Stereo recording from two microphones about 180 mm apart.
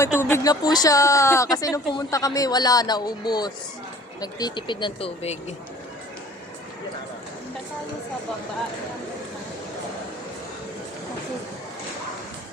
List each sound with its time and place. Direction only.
0.0 s speech: 15° left (ahead or behind); by 5.4 s 35° left (ahead or behind)